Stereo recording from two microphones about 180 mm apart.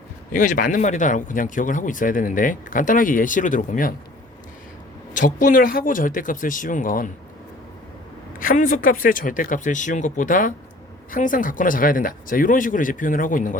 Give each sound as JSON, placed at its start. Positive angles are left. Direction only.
{"t": 0.3, "sound": "speech", "side_deg": 45}
{"t": 5.1, "sound": "speech", "side_deg": 45}
{"t": 8.4, "sound": "speech", "side_deg": 50}